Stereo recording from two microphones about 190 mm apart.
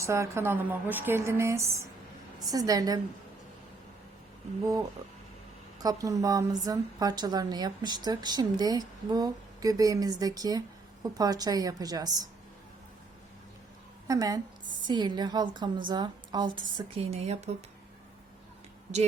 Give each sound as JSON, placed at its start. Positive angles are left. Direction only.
{"t": 0.0, "sound": "a woman's voice", "side_deg": -15}
{"t": 4.6, "sound": "a woman's voice", "side_deg": -20}
{"t": 14.1, "sound": "a woman's voice", "side_deg": -20}